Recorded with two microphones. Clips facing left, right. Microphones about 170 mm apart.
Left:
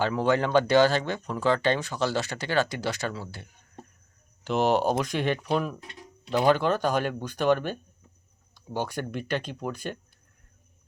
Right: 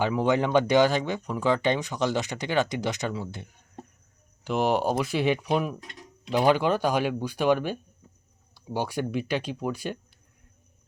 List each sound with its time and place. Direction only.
0.0 s speech: 15° right (ahead or behind)